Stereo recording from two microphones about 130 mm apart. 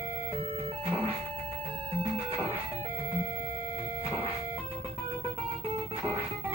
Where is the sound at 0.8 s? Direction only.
50° right (ahead or behind).